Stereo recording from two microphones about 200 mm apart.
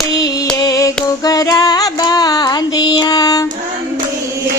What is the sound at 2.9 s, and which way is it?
Child singing, 20° left (ahead or behind).